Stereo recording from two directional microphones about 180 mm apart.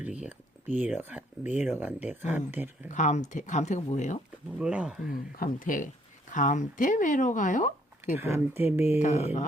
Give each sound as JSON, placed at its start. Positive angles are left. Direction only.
{"t": 0.0, "sound": "a sound", "side_deg": -10}
{"t": 0.8, "sound": "speech", "side_deg": -10}
{"t": 2.9, "sound": "speech", "side_deg": 40}
{"t": 4.5, "sound": "speech", "side_deg": -5}
{"t": 5.1, "sound": "speech", "side_deg": 50}
{"t": 8.1, "sound": "speech", "side_deg": -10}
{"t": 9.0, "sound": "speech", "side_deg": 40}